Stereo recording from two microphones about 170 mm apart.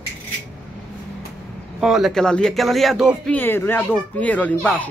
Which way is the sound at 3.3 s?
10° left (ahead or behind).